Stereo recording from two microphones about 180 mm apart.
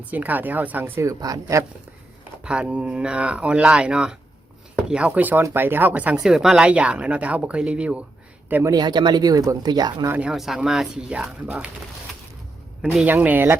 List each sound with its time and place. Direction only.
0.0 s speech: 10° right (ahead or behind)
2.4 s speech: 5° right (ahead or behind)
8.7 s speech: 25° right (ahead or behind)
10.1 s speech: 5° right (ahead or behind)
12.8 s speech: 5° right (ahead or behind)